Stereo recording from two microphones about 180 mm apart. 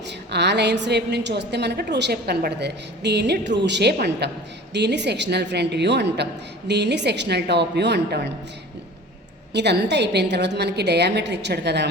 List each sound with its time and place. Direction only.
0.3 s a woman's voice: 70° right (ahead or behind)
9.5 s a woman's voice: 70° right (ahead or behind)